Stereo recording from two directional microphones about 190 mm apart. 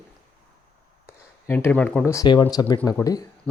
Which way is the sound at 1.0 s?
10° left (ahead or behind).